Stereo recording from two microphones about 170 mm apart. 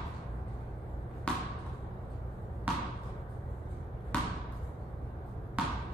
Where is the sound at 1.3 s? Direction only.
5° left (ahead or behind).